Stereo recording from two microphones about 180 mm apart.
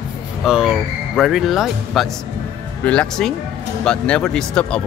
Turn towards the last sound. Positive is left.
turn(degrees=5)  # may be behind; listen again after turning